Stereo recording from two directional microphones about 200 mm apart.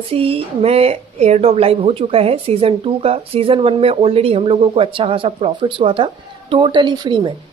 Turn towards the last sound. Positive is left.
turn(degrees=-25)  # may be behind; listen again after turning